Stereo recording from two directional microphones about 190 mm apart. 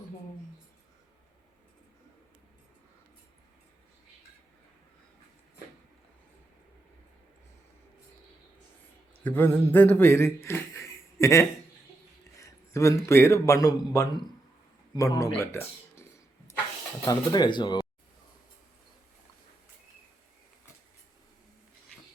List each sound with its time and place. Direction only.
9.2 s a man's voice: 10° left (ahead or behind)
17.1 s speech: 20° left (ahead or behind)